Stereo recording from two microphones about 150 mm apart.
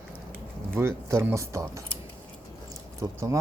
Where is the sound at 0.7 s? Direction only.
15° right (ahead or behind).